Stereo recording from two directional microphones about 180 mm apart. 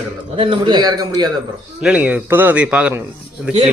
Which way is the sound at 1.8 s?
10° right (ahead or behind).